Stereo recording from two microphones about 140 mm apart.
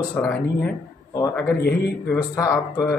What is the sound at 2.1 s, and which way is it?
Speech, 20° left (ahead or behind).